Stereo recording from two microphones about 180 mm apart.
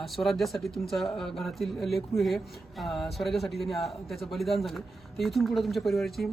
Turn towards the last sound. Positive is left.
turn(degrees=0)  # may be behind; listen again after turning